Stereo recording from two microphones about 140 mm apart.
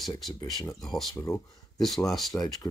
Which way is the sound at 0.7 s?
Centre (ahead or behind).